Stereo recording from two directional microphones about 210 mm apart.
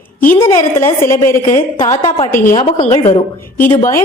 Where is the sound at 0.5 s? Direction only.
15° left (ahead or behind).